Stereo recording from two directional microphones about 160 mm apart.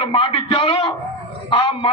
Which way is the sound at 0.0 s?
35° left (ahead or behind).